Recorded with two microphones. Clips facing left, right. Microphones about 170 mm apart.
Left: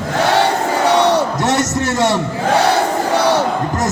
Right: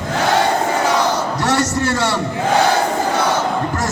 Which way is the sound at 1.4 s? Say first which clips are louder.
Left 1 dB; 20° left (ahead or behind).